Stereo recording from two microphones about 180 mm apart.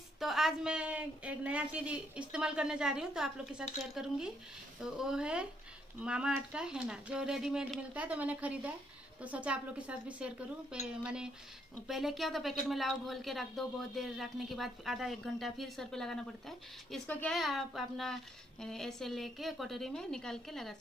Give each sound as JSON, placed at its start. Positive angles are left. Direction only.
{"t": 0.2, "sound": "speech", "side_deg": 0}